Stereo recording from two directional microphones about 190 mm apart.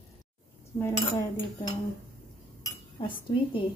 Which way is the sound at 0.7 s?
15° left (ahead or behind).